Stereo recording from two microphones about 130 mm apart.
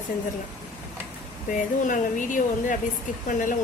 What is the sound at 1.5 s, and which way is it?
Speech, 85° left.